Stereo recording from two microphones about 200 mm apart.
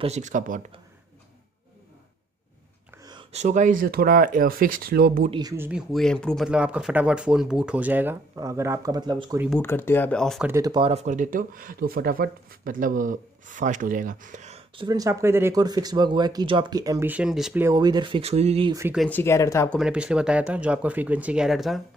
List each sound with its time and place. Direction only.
0.0 s speech: 35° right (ahead or behind)
3.1 s speech: 30° right (ahead or behind); by 5.3 s 45° right (ahead or behind)
5.3 s speech: 20° right (ahead or behind)
5.7 s speech: centre (ahead or behind); by 9.1 s 20° right (ahead or behind)
9.5 s speech: 10° left (ahead or behind)
10.4 s speech: 15° right (ahead or behind); by 14.9 s 35° right (ahead or behind)
14.9 s speech: 15° right (ahead or behind)
17.6 s speech: 20° right (ahead or behind)
18.7 s speech: 15° right (ahead or behind)
18.9 s speech: 10° left (ahead or behind)
19.8 s speech: 5° right (ahead or behind)